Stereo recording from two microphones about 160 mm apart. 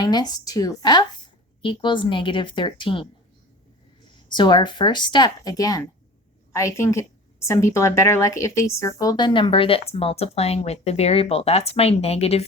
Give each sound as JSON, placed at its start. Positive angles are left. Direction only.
{"t": 0.0, "sound": "a woman's voice", "side_deg": 25}
{"t": 4.3, "sound": "a woman's voice", "side_deg": 30}